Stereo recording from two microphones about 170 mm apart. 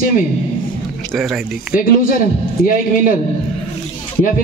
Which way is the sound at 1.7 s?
55° left (ahead or behind).